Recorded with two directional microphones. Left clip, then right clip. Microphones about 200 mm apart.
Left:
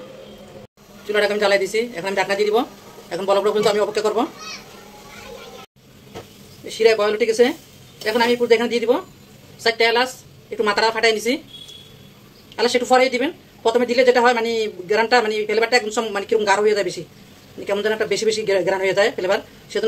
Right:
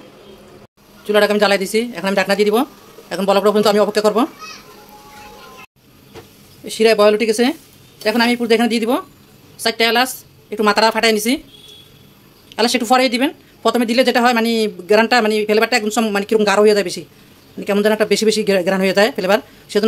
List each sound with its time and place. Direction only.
1.0 s speech: 60° right (ahead or behind)
6.7 s speech: 55° right (ahead or behind)
12.5 s speech: 55° right (ahead or behind)